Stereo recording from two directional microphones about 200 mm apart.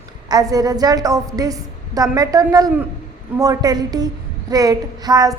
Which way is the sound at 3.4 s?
20° right (ahead or behind).